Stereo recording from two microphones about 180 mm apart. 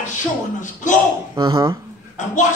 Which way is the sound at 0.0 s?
45° left (ahead or behind).